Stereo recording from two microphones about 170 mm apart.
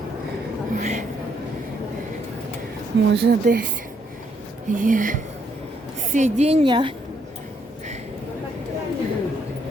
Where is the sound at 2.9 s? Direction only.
90° right.